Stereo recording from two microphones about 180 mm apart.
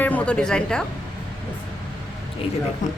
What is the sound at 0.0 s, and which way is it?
Speech, 10° left (ahead or behind).